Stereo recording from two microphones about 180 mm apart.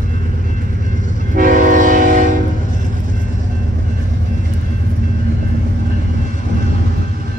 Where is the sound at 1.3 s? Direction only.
50° right (ahead or behind).